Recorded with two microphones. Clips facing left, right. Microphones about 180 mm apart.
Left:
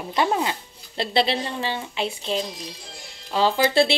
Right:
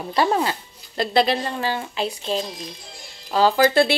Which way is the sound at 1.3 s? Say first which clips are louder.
Right 3 dB; 45° right (ahead or behind).